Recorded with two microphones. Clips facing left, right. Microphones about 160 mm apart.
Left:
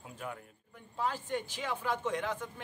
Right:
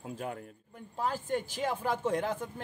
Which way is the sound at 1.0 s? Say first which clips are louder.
Right 3 dB; 40° right (ahead or behind).